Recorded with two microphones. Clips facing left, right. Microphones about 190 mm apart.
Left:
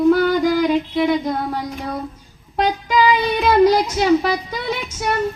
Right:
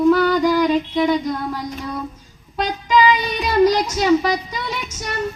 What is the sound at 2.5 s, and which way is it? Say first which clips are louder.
Child singing: even; 55° left (ahead or behind).